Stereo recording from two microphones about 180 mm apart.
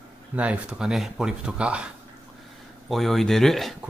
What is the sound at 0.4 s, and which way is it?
Speech, 5° right (ahead or behind).